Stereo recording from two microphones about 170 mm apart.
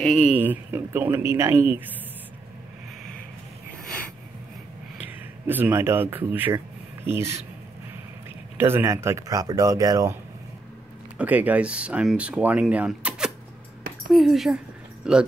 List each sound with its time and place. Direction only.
0.0 s speech: centre (ahead or behind)
4.9 s speech: 10° right (ahead or behind)
8.5 s speech: 15° right (ahead or behind)
11.1 s speech: 10° right (ahead or behind)